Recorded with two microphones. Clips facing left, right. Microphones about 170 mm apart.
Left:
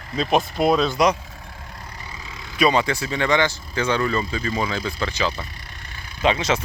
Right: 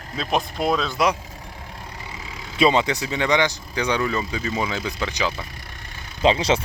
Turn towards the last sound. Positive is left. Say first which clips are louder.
# right 2 dB
turn(degrees=-30)  # may be behind; listen again after turning